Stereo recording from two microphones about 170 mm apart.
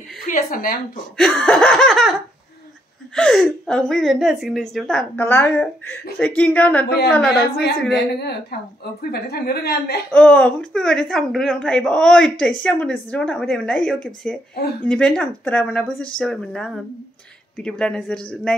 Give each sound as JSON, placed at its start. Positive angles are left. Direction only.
{"t": 0.2, "sound": "speech", "side_deg": 55}
{"t": 1.1, "sound": "a woman's voice", "side_deg": 5}
{"t": 3.2, "sound": "a woman's voice", "side_deg": 5}
{"t": 5.2, "sound": "a woman's voice", "side_deg": 15}
{"t": 7.3, "sound": "a woman's voice", "side_deg": 65}
{"t": 10.1, "sound": "a woman's voice", "side_deg": 5}